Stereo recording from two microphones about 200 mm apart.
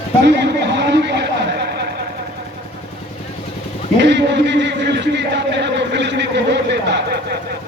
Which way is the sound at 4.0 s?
60° right (ahead or behind).